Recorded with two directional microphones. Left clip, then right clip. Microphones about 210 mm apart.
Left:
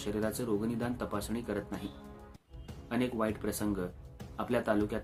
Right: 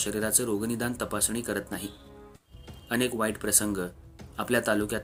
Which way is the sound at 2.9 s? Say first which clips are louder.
Right 5 dB; 30° right (ahead or behind).